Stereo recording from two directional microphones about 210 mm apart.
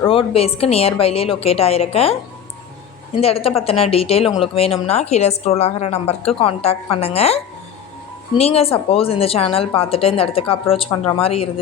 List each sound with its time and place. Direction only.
0.1 s a woman's voice: 25° left (ahead or behind)
3.2 s a woman's voice: 30° left (ahead or behind)